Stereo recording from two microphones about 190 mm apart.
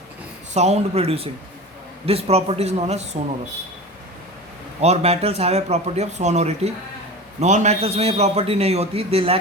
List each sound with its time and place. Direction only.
0.5 s a man's voice: 35° right (ahead or behind)
4.8 s a man's voice: 35° right (ahead or behind)